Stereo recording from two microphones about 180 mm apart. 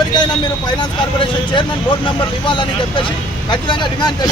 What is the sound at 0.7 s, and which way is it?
Speech, 25° left (ahead or behind).